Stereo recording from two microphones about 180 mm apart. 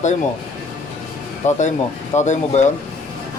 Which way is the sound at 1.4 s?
40° left (ahead or behind).